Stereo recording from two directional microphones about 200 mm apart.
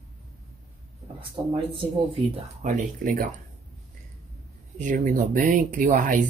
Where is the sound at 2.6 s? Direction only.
40° right (ahead or behind).